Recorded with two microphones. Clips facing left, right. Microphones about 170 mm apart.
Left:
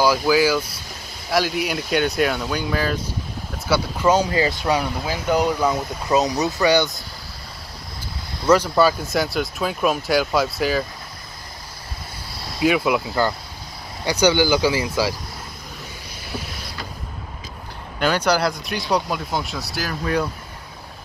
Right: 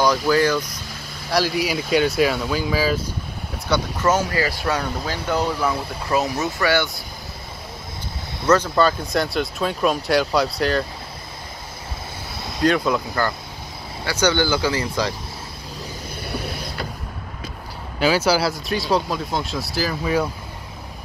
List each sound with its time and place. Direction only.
0.0 s speech: 5° left (ahead or behind)
3.6 s speech: 10° left (ahead or behind)
8.5 s speech: 10° left (ahead or behind)
12.5 s speech: 10° left (ahead or behind)
17.9 s speech: 5° right (ahead or behind)